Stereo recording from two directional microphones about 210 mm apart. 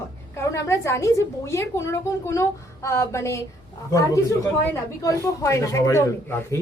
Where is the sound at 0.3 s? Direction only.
15° left (ahead or behind).